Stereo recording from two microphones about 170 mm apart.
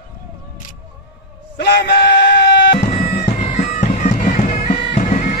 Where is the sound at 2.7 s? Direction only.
35° left (ahead or behind).